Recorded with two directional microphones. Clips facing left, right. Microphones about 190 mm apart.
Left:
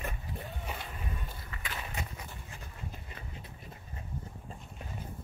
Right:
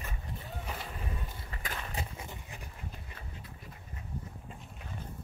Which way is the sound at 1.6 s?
30° right (ahead or behind).